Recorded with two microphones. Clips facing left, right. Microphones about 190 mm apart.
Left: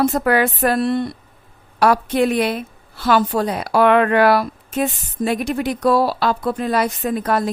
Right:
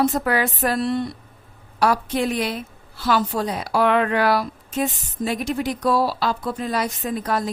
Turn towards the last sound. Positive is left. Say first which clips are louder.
# left 4 dB
turn(degrees=60)  # may be behind; listen again after turning